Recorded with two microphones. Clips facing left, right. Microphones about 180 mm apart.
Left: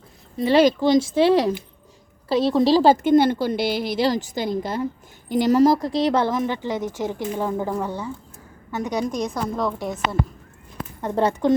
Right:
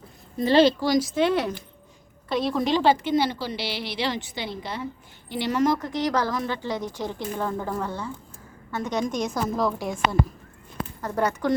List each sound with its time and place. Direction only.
0.3 s a woman's voice: 10° left (ahead or behind)
9.3 s a woman's voice: 5° right (ahead or behind)
11.0 s speech: 25° left (ahead or behind)